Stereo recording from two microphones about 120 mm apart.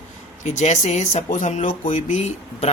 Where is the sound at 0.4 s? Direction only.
80° left.